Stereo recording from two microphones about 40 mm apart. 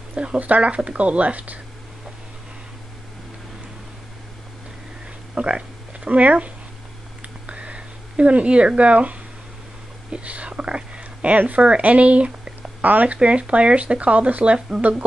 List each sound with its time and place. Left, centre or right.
0.1 s speech: right
5.3 s speech: right
7.2 s a sound: right
10.1 s speech: right